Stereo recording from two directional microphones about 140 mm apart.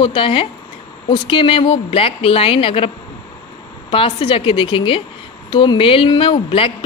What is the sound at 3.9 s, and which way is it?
Speech, 40° left (ahead or behind).